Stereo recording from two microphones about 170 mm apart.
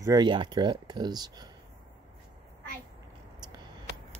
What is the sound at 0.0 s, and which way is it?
Speech, 25° right (ahead or behind).